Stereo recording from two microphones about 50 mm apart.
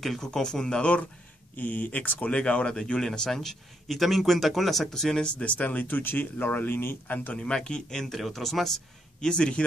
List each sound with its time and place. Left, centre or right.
0.0 s speech: centre
1.6 s speech: left; by 5.2 s centre
5.2 s speech: left
7.1 s speech: left
7.3 s speech: centre
8.0 s speech: centre
9.2 s speech: centre